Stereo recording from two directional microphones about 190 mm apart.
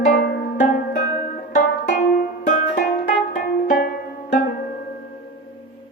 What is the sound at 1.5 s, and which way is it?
Banjo, 50° left (ahead or behind).